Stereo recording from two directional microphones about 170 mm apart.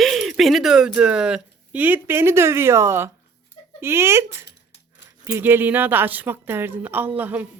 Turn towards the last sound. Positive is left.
turn(degrees=-10)  # may be behind; listen again after turning